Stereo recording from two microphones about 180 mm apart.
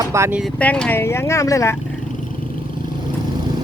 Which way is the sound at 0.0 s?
15° right (ahead or behind).